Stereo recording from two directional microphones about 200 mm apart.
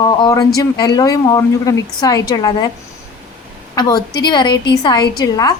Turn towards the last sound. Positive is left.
turn(degrees=20)  # may be behind; listen again after turning